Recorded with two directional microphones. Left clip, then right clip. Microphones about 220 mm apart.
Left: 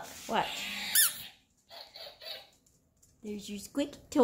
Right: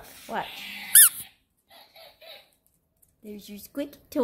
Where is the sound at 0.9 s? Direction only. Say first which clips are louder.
Right 8 dB; 35° right (ahead or behind).